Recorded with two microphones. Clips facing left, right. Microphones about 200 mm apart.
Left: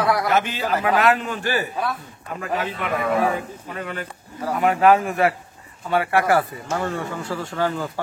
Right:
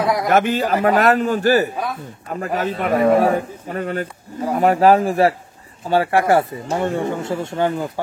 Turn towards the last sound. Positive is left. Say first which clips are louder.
# right 4 dB
turn(degrees=-20)  # may be behind; listen again after turning